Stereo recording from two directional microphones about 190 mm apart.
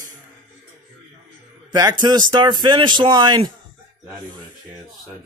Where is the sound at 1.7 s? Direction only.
20° right (ahead or behind).